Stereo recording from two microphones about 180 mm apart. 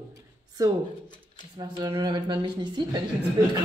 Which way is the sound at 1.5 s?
25° right (ahead or behind).